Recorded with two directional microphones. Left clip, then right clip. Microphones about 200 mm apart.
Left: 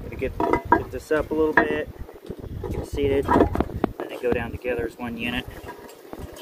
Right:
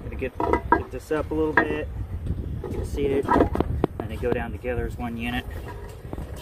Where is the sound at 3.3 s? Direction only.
15° left (ahead or behind).